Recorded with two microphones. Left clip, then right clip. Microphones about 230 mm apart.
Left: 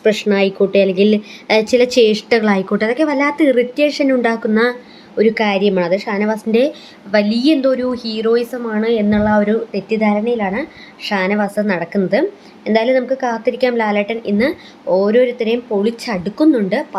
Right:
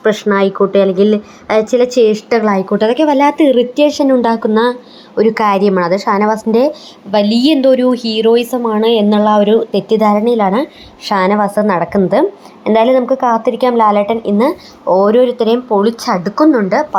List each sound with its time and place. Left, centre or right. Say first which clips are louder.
0.0 s speech: right 2 dB; centre
2.8 s a woman's voice: right 6 dB; centre
5.6 s a woman's voice: right 4 dB; centre
6.3 s a woman's voice: right 3 dB; centre
16.1 s a woman's voice: right 3 dB; centre